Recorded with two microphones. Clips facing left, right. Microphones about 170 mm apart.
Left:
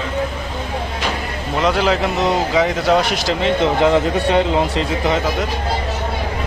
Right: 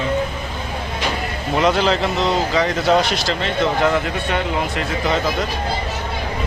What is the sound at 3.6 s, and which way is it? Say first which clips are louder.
A man's voice: left 2 dB; 25° left (ahead or behind).